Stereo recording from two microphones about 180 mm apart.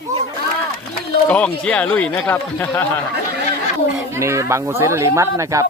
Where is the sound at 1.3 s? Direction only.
5° left (ahead or behind).